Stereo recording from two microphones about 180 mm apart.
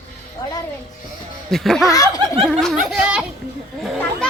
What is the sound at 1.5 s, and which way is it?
Speech, centre (ahead or behind).